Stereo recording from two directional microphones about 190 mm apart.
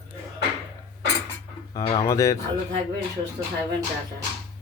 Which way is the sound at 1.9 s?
20° left (ahead or behind).